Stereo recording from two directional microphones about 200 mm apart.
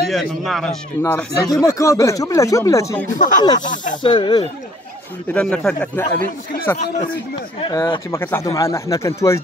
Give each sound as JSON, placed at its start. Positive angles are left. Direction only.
{"t": 0.1, "sound": "speech", "side_deg": 0}
{"t": 1.0, "sound": "speech", "side_deg": 15}
{"t": 3.1, "sound": "speech", "side_deg": 40}
{"t": 3.9, "sound": "speech", "side_deg": 25}
{"t": 5.3, "sound": "speech", "side_deg": 5}
{"t": 7.6, "sound": "speech", "side_deg": 20}